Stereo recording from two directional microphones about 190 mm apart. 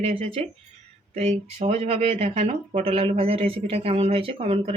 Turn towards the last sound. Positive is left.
turn(degrees=-30)  # may be behind; listen again after turning